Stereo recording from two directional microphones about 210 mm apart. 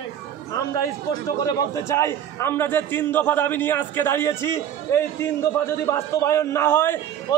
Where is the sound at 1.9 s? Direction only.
15° left (ahead or behind).